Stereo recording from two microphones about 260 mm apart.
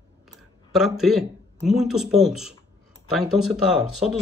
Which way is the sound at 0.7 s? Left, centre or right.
Centre.